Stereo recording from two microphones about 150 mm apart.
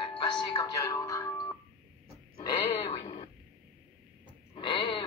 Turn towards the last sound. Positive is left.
turn(degrees=35)  # may be behind; listen again after turning